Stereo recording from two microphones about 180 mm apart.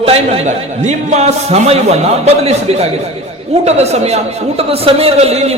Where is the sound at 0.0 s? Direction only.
30° right (ahead or behind).